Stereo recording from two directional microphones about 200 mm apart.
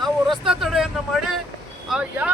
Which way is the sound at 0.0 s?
Centre (ahead or behind).